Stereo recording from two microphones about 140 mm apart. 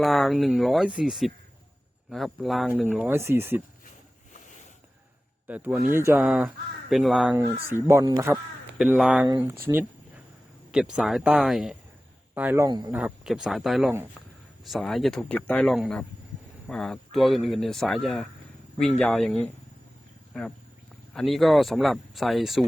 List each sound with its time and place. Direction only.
0.0 s a man's voice: centre (ahead or behind); by 3.6 s 15° right (ahead or behind)
5.5 s speech: 15° right (ahead or behind)
6.1 s a man's voice: 5° right (ahead or behind)
7.9 s speech: 25° right (ahead or behind)
8.8 s speech: 5° right (ahead or behind)
9.2 s speech: 25° right (ahead or behind)
10.7 s a man's voice: 5° right (ahead or behind)
12.6 s speech: 30° right (ahead or behind)
12.9 s a man's voice: 10° right (ahead or behind)